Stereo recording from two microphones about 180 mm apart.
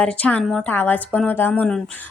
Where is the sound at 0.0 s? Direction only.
5° left (ahead or behind).